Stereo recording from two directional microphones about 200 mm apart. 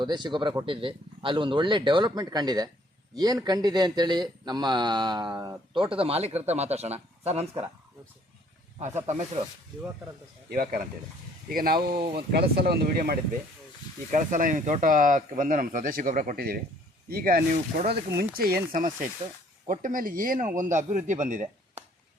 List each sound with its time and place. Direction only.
0.0 s speech: 20° right (ahead or behind)
9.0 s speech: 35° right (ahead or behind)
10.5 s speech: 45° right (ahead or behind)
14.1 s speech: 40° right (ahead or behind)